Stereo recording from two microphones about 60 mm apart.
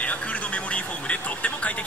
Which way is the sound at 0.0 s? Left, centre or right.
Left.